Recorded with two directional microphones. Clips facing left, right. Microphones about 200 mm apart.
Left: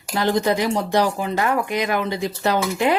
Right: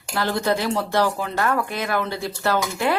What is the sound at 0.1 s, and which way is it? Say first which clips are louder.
A woman's voice: left 3 dB; 20° left (ahead or behind).